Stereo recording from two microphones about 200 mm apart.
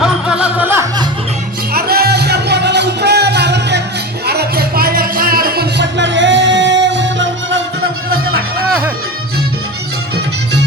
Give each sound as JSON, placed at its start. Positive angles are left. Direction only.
{"t": 0.0, "sound": "music", "side_deg": -5}
{"t": 1.7, "sound": "music", "side_deg": -50}